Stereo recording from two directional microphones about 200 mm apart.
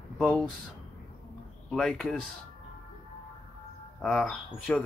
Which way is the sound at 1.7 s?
5° left (ahead or behind).